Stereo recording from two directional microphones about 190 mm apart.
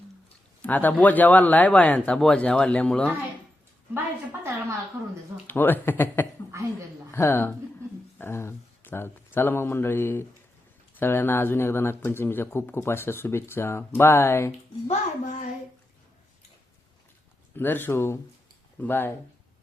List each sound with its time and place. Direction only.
0.6 s speech: 10° left (ahead or behind)
3.9 s a sound: 10° right (ahead or behind)
5.5 s speech: 10° left (ahead or behind)
6.5 s a sound: 15° right (ahead or behind)
7.1 s speech: 15° left (ahead or behind)
14.8 s a child's voice: 40° left (ahead or behind)
17.6 s speech: 10° left (ahead or behind)